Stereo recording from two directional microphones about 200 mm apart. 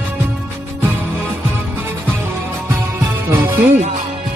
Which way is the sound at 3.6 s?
40° right (ahead or behind).